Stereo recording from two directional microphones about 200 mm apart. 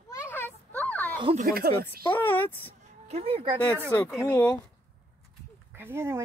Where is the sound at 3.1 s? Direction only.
30° right (ahead or behind).